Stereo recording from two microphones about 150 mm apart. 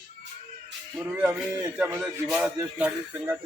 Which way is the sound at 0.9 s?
10° right (ahead or behind).